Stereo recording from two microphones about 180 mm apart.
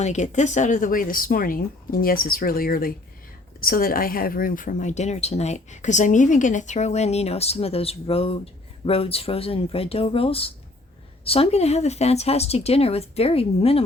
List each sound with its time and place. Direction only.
0.0 s speech: 40° left (ahead or behind)